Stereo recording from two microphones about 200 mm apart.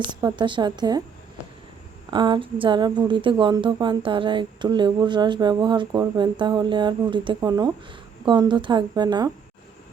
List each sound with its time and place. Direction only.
0.2 s speech: 20° right (ahead or behind)
2.0 s speech: 25° right (ahead or behind)